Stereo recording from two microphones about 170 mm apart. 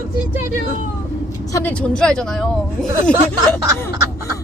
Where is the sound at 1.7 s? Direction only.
5° left (ahead or behind).